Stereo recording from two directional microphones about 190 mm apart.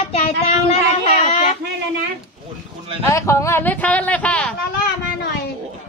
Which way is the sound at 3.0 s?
15° left (ahead or behind).